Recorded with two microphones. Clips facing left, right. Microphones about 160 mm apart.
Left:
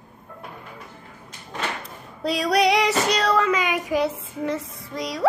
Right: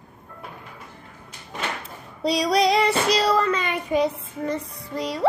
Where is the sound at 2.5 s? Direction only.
70° left (ahead or behind).